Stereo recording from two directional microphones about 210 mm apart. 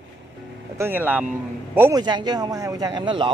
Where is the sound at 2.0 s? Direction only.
20° right (ahead or behind).